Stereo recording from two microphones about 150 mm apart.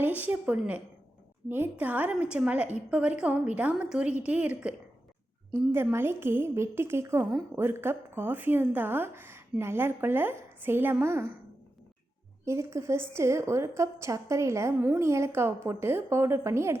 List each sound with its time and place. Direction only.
0.0 s a woman's voice: 10° right (ahead or behind)
5.7 s a woman's voice: 15° right (ahead or behind)
12.5 s a woman's voice: 20° right (ahead or behind)